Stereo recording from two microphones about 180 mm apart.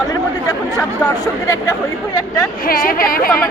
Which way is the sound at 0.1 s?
20° left (ahead or behind).